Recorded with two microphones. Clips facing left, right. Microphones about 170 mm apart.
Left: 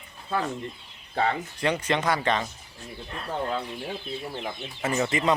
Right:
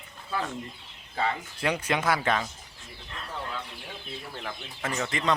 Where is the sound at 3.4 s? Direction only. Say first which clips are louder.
Left 8 dB; 35° left (ahead or behind).